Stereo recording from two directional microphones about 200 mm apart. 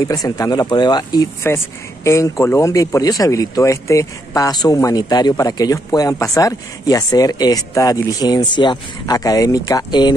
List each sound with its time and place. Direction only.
0.0 s speech: 15° left (ahead or behind)